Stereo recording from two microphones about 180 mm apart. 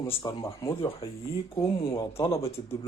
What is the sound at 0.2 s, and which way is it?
Speech, 20° left (ahead or behind).